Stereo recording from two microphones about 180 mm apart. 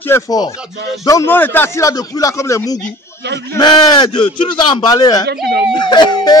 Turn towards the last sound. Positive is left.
turn(degrees=25)  # may be behind; listen again after turning